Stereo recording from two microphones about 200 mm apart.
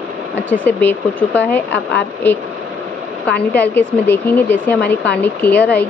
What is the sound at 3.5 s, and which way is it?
Speech, 10° left (ahead or behind).